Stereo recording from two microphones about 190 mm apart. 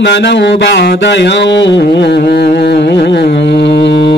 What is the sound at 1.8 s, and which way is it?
Music, 65° left (ahead or behind).